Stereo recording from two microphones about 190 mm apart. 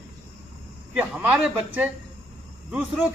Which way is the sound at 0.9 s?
10° right (ahead or behind).